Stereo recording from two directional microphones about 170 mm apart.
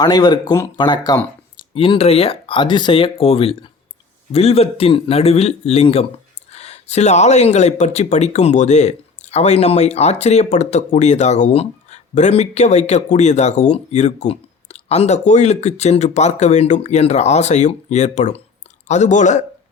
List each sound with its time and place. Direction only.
0.0 s speech: 25° left (ahead or behind); by 19.5 s 45° left (ahead or behind)